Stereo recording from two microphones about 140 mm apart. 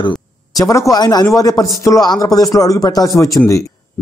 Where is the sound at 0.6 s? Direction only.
25° left (ahead or behind).